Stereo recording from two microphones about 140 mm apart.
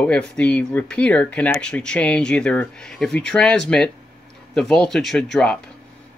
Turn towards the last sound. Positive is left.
turn(degrees=5)  # may be behind; listen again after turning